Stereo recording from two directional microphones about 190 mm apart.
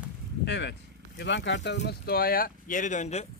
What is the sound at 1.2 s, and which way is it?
Speech, 70° left (ahead or behind).